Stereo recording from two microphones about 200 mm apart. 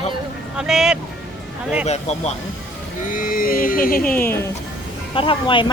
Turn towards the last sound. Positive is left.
turn(degrees=25)  # may be behind; listen again after turning